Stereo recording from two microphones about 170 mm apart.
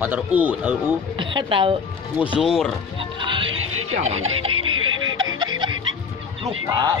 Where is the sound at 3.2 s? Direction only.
30° right (ahead or behind).